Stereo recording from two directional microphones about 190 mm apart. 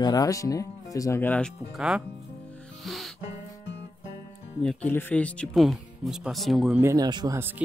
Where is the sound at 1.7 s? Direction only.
5° right (ahead or behind).